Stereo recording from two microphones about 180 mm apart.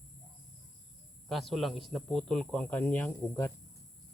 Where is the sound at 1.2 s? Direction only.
Centre (ahead or behind).